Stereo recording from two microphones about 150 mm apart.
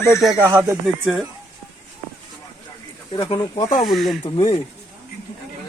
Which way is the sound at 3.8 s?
Centre (ahead or behind).